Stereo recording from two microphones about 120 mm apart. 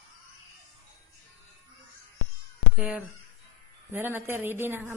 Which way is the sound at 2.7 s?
10° right (ahead or behind).